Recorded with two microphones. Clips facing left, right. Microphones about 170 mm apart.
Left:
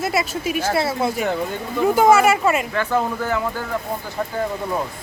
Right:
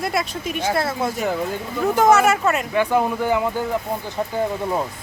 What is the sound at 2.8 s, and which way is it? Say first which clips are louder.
Speech: right 2 dB; 15° right (ahead or behind).